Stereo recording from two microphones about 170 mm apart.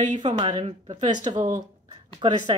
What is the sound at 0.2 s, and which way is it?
A woman's voice, 30° right (ahead or behind).